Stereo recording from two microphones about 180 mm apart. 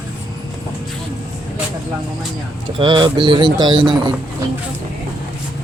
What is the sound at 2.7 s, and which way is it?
Speech, 25° right (ahead or behind).